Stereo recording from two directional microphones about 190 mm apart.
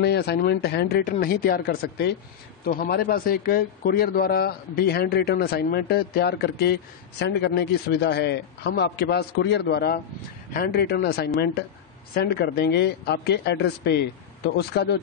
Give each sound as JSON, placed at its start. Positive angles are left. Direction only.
{"t": 0.0, "sound": "a man's voice", "side_deg": 60}